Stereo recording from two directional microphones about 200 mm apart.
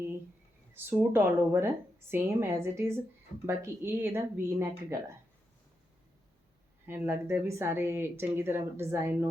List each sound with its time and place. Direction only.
0.7 s a woman's voice: 10° right (ahead or behind)
6.8 s a woman's voice: 10° right (ahead or behind)